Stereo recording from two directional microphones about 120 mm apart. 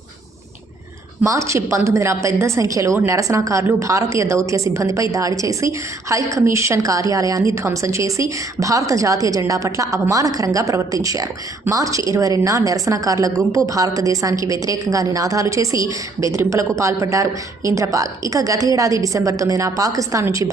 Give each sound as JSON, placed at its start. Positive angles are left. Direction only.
{"t": 1.2, "sound": "a woman's voice", "side_deg": -25}